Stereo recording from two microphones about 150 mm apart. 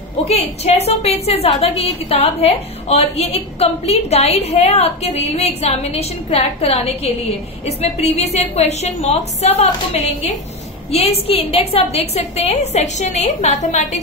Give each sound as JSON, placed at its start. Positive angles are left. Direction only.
{"t": 0.3, "sound": "a woman's voice", "side_deg": 45}
{"t": 10.9, "sound": "a woman's voice", "side_deg": 40}